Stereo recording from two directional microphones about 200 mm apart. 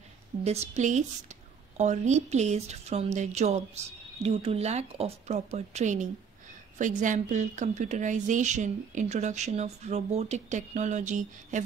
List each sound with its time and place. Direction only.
0.4 s a woman's voice: 35° right (ahead or behind)